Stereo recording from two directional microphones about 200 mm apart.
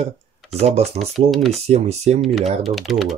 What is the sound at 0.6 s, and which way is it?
Speech, 30° right (ahead or behind).